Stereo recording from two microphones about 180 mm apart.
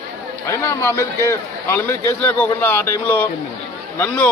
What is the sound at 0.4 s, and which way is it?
A man's voice, 15° left (ahead or behind).